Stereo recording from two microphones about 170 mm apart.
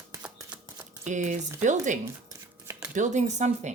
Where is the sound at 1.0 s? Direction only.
45° right (ahead or behind).